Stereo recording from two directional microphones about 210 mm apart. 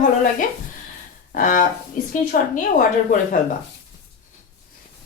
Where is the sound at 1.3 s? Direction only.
40° left (ahead or behind).